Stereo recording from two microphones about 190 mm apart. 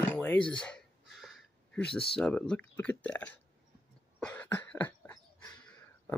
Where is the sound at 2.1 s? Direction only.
5° left (ahead or behind).